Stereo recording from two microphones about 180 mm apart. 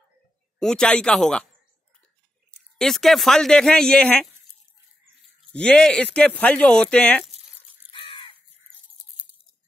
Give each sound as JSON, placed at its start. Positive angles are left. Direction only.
{"t": 0.6, "sound": "speech", "side_deg": 5}
{"t": 2.8, "sound": "speech", "side_deg": 0}
{"t": 5.5, "sound": "speech", "side_deg": 5}
{"t": 7.9, "sound": "caw", "side_deg": 30}